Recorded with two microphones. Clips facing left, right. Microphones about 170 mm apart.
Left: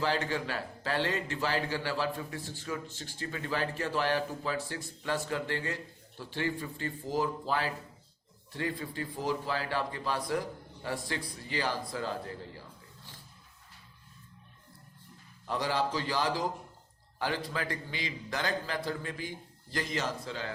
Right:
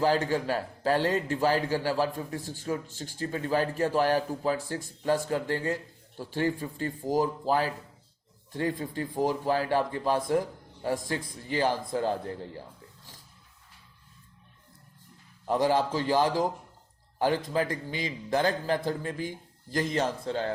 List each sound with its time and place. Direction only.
0.3 s a man's voice: 45° right (ahead or behind)
15.4 s a man's voice: 50° right (ahead or behind)
17.5 s a man's voice: 45° right (ahead or behind)